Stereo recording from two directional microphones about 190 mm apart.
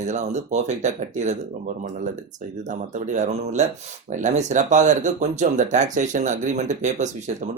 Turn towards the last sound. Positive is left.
turn(degrees=-40)  # may be behind; listen again after turning